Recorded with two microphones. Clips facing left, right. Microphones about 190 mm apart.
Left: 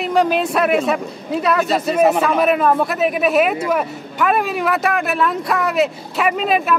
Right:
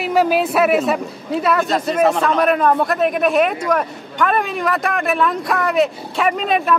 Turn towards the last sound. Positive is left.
turn(degrees=5)  # may be behind; listen again after turning